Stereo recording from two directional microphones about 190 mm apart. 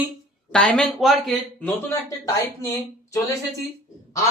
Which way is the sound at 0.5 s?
5° left (ahead or behind).